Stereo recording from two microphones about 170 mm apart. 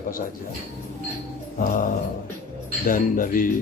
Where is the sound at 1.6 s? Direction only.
55° left (ahead or behind).